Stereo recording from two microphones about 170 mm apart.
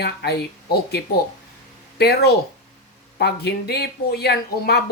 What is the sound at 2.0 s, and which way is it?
Speech, 70° left (ahead or behind).